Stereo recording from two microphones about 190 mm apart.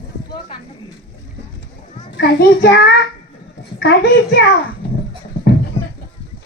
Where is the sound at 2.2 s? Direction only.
60° left (ahead or behind).